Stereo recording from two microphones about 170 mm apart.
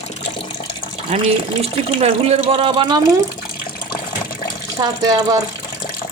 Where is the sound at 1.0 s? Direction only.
40° right (ahead or behind).